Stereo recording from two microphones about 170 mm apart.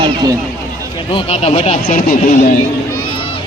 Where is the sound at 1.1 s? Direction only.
35° left (ahead or behind).